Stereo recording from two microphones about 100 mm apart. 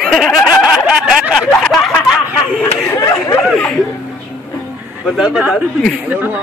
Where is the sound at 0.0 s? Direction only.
Centre (ahead or behind).